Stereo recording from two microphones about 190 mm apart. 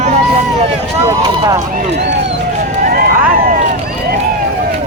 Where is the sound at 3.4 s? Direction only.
45° right (ahead or behind).